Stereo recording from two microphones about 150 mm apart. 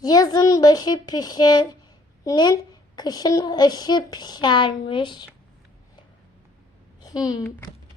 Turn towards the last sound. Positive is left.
turn(degrees=25)  # may be behind; listen again after turning